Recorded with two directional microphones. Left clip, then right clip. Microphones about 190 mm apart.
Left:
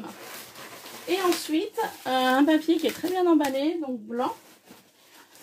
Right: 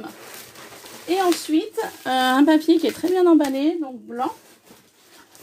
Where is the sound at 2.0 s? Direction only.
50° right (ahead or behind).